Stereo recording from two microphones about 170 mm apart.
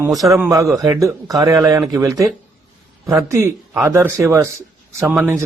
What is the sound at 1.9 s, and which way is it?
Speech, 20° right (ahead or behind).